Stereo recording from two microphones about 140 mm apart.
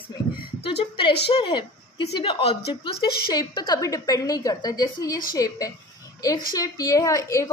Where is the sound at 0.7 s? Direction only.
35° left (ahead or behind).